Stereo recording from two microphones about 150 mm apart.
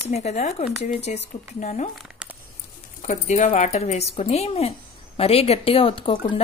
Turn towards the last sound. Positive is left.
turn(degrees=35)  # may be behind; listen again after turning